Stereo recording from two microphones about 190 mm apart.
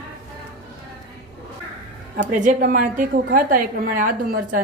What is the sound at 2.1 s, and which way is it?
A woman's voice, 45° right (ahead or behind).